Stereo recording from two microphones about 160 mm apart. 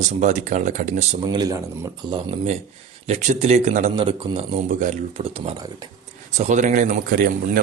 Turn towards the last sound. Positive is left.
turn(degrees=-60)  # may be behind; listen again after turning